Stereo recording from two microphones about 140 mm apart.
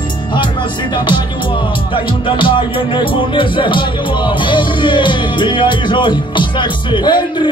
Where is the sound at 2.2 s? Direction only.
35° left (ahead or behind).